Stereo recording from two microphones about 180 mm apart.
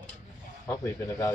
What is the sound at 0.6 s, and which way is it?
Cutlery, 15° left (ahead or behind).